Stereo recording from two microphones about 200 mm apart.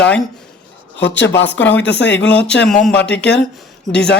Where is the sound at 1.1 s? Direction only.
65° left (ahead or behind).